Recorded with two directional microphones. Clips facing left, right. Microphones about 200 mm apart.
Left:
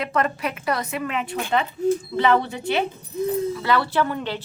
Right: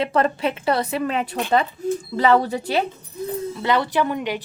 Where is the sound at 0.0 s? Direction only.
30° right (ahead or behind).